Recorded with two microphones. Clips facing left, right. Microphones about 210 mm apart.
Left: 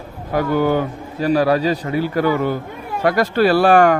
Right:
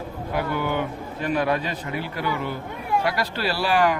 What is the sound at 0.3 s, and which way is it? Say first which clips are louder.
A man's voice: left 8 dB; 45° left (ahead or behind).